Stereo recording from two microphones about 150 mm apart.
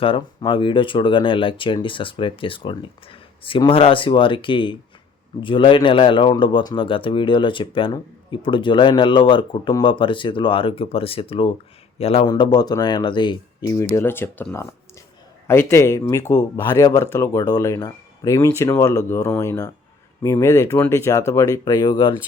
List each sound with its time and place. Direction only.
0.0 s speech: 35° left (ahead or behind)
12.3 s speech: 25° left (ahead or behind)